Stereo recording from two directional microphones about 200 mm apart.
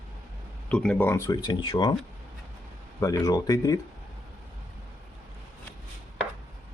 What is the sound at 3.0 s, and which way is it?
Speech, 15° left (ahead or behind).